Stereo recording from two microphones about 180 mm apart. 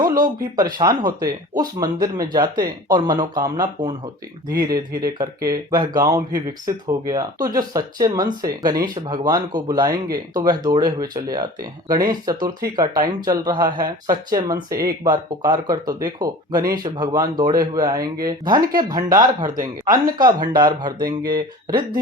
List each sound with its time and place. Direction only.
0.5 s speech: 20° right (ahead or behind)